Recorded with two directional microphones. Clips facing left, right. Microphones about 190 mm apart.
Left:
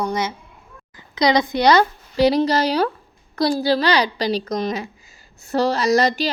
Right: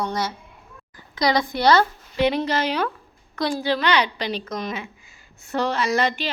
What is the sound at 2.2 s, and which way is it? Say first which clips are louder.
A woman's voice: left 5 dB; 35° left (ahead or behind).